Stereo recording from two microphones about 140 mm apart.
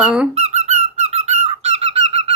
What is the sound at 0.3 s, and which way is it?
Squeak, 50° right (ahead or behind).